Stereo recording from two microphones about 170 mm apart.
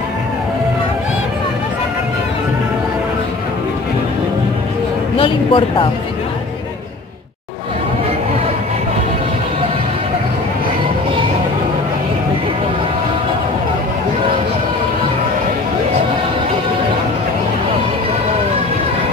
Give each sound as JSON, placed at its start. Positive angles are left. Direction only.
{"t": 5.1, "sound": "speech", "side_deg": 30}